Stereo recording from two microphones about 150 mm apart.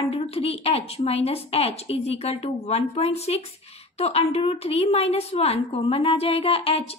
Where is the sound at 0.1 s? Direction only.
40° left (ahead or behind).